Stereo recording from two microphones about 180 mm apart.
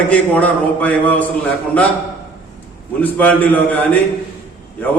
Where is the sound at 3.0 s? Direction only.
10° left (ahead or behind).